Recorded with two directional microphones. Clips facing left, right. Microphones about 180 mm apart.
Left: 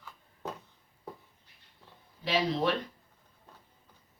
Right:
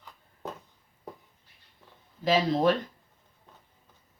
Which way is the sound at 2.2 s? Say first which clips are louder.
Right 5 dB; 45° right (ahead or behind).